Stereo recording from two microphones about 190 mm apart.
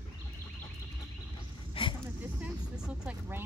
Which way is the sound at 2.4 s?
5° right (ahead or behind).